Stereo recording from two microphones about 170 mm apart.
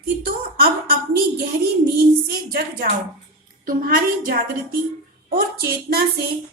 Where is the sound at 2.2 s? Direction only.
65° right (ahead or behind).